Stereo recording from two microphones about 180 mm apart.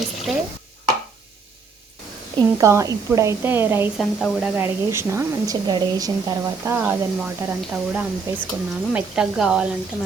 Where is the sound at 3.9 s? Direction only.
Centre (ahead or behind).